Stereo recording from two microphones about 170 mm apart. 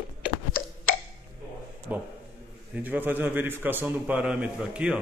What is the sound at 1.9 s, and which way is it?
A man's voice, 10° right (ahead or behind).